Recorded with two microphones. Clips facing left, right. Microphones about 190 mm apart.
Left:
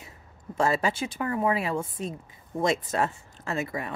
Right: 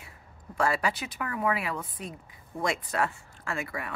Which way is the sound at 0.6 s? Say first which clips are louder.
Left 3 dB; 25° left (ahead or behind).